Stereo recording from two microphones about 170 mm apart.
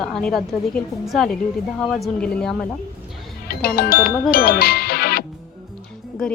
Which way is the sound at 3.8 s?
60° left (ahead or behind).